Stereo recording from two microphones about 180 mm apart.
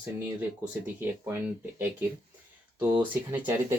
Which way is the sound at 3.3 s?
10° right (ahead or behind).